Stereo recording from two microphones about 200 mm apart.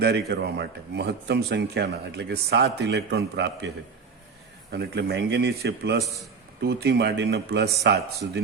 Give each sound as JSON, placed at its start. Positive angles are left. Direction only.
{"t": 0.0, "sound": "speech", "side_deg": -55}
{"t": 4.7, "sound": "speech", "side_deg": -55}